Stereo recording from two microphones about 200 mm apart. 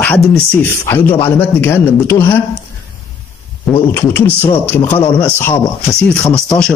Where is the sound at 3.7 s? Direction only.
10° left (ahead or behind).